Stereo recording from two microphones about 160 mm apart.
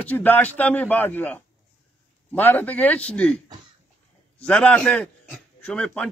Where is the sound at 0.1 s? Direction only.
10° left (ahead or behind).